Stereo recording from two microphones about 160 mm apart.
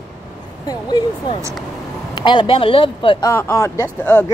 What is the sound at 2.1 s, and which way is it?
Speech, 30° left (ahead or behind).